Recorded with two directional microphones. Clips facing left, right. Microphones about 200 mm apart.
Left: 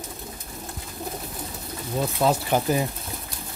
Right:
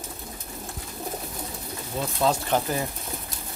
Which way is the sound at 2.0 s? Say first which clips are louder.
Left 2 dB; 10° left (ahead or behind).